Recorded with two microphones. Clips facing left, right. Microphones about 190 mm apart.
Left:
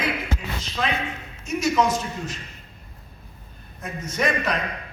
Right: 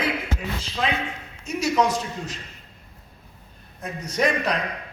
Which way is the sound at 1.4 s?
35° right (ahead or behind).